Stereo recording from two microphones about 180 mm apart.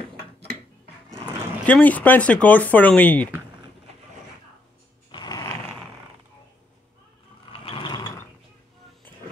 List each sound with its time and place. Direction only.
1.7 s speech: 10° left (ahead or behind)
5.1 s a sound: 20° left (ahead or behind)
7.5 s mechanisms: 30° left (ahead or behind)